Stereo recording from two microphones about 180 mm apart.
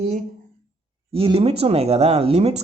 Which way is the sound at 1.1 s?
30° right (ahead or behind).